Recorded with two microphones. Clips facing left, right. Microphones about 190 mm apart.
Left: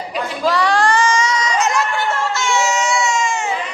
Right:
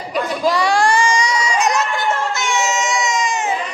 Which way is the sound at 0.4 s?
10° right (ahead or behind).